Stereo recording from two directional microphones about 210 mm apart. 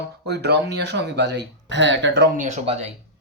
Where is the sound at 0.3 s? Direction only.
50° right (ahead or behind).